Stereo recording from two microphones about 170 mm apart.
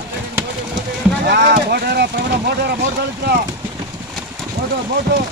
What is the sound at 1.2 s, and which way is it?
Speech, 80° right.